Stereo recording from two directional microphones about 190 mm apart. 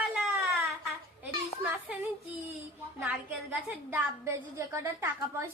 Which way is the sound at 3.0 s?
5° right (ahead or behind).